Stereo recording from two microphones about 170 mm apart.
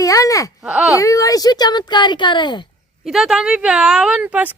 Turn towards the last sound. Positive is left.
turn(degrees=-10)  # may be behind; listen again after turning